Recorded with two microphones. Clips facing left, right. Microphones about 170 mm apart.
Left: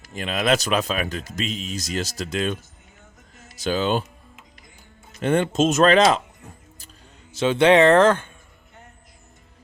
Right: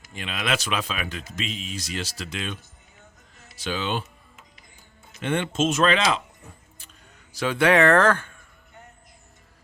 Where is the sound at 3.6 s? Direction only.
40° left (ahead or behind).